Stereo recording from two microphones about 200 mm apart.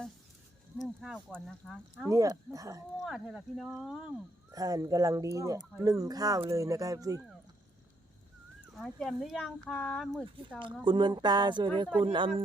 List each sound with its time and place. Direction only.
1.0 s speech: centre (ahead or behind)
2.0 s speech: 15° right (ahead or behind)
3.0 s speech: 5° right (ahead or behind)
4.5 s speech: 20° right (ahead or behind)
8.6 s speech: centre (ahead or behind)
10.8 s speech: 20° right (ahead or behind)